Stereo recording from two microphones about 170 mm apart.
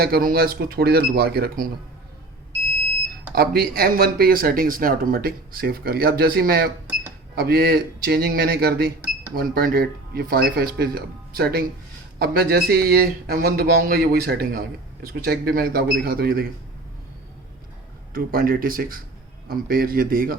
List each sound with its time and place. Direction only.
0.0 s speech: 60° right (ahead or behind)
3.3 s speech: 60° right (ahead or behind)
18.1 s speech: 60° right (ahead or behind)